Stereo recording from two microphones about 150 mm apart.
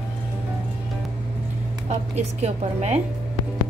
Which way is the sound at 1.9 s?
45° right (ahead or behind).